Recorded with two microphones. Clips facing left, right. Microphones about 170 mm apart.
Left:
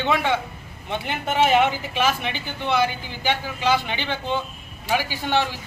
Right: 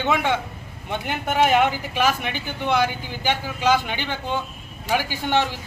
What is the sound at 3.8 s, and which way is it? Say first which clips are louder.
Speech: left 1 dB; 10° right (ahead or behind).